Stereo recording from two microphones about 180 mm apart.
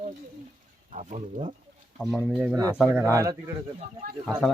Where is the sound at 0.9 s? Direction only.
40° right (ahead or behind).